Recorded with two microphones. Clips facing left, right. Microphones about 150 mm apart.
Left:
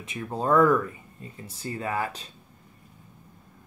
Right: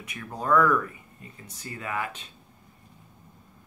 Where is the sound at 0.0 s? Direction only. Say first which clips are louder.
Left 4 dB; 25° left (ahead or behind).